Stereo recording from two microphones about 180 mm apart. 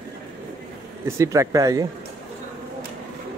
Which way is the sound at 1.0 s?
15° right (ahead or behind).